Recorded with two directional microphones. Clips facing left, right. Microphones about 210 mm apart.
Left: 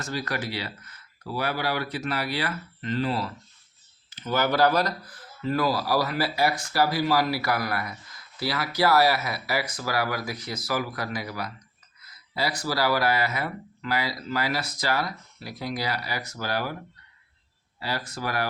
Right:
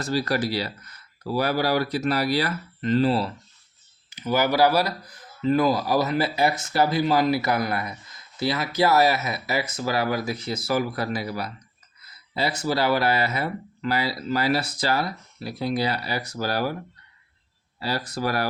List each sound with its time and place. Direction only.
0.0 s speech: 35° right (ahead or behind)
4.1 s speech: 10° right (ahead or behind); by 16.7 s 35° right (ahead or behind)
17.7 s speech: 35° right (ahead or behind)